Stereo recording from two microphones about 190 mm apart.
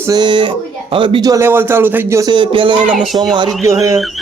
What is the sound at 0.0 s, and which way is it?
Speech, 20° right (ahead or behind).